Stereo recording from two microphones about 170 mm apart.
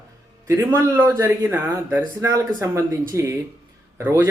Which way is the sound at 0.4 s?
15° right (ahead or behind).